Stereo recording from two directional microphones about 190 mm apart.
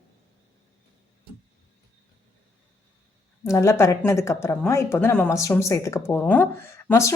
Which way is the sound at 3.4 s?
15° left (ahead or behind).